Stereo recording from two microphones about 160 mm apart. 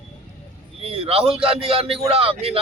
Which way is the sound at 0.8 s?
40° right (ahead or behind).